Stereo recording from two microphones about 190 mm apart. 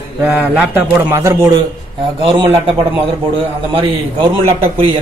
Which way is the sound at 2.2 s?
25° right (ahead or behind).